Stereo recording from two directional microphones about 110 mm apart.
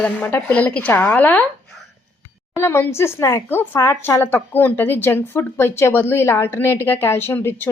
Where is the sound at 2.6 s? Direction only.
20° left (ahead or behind).